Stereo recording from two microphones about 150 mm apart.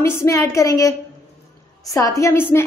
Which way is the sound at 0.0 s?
15° left (ahead or behind).